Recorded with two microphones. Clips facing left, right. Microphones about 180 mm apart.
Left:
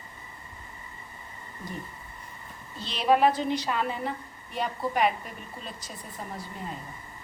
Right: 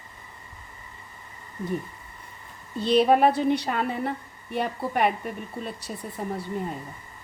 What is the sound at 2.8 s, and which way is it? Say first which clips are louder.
A woman's voice: right 4 dB; 50° right (ahead or behind).